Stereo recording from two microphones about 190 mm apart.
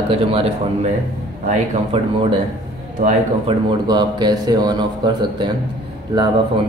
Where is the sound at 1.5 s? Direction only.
30° right (ahead or behind).